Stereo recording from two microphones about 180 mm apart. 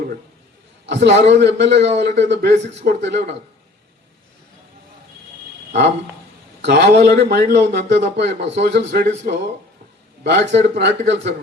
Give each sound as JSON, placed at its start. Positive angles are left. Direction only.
{"t": 0.9, "sound": "speech", "side_deg": -75}
{"t": 6.6, "sound": "speech", "side_deg": -70}